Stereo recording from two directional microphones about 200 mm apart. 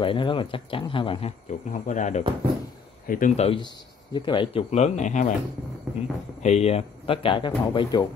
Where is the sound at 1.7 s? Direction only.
40° left (ahead or behind).